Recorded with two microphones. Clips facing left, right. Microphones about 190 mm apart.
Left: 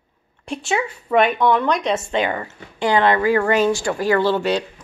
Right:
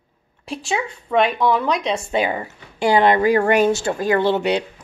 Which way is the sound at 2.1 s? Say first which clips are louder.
Right 1 dB; 10° right (ahead or behind).